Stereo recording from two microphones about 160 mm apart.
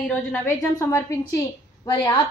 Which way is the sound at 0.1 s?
10° left (ahead or behind).